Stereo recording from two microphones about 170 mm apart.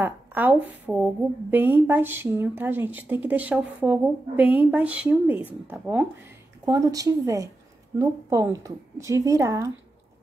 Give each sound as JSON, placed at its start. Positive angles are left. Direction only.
{"t": 0.0, "sound": "a woman's voice", "side_deg": -10}